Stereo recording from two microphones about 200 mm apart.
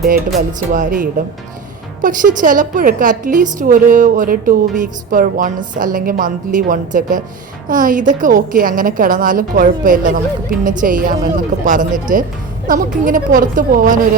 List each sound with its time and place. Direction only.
0.3 s a woman's voice: 40° right (ahead or behind)